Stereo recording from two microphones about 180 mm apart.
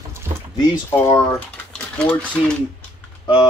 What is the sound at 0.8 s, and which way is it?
Speech, 15° left (ahead or behind).